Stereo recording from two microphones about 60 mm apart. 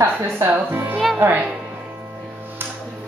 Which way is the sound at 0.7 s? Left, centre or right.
Right.